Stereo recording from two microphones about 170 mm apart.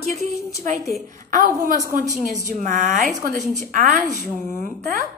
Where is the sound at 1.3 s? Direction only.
50° right (ahead or behind).